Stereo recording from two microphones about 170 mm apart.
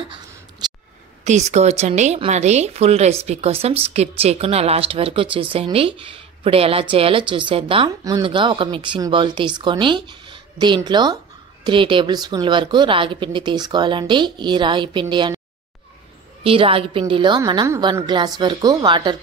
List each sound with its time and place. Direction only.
0.6 s a sound: 25° right (ahead or behind)
1.2 s a woman's voice: 40° right (ahead or behind); by 15.4 s 25° right (ahead or behind)
16.4 s a woman's voice: 30° right (ahead or behind)